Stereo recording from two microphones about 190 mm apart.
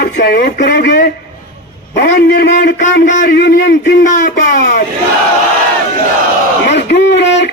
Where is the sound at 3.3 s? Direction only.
60° left (ahead or behind).